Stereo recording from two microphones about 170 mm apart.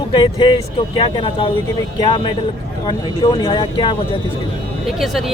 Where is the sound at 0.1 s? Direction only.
30° left (ahead or behind).